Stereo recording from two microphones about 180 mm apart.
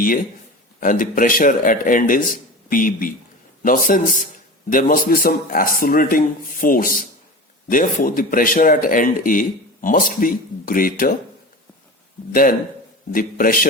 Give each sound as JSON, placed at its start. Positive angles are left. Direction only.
{"t": 0.8, "sound": "speech", "side_deg": 50}
{"t": 12.3, "sound": "speech", "side_deg": 50}